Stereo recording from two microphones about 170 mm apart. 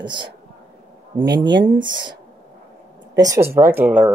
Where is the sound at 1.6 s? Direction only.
25° right (ahead or behind).